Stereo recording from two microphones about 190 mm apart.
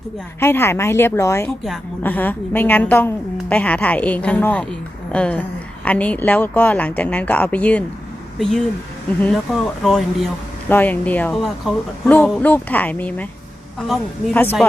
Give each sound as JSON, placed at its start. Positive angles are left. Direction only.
{"t": 0.3, "sound": "speech", "side_deg": 10}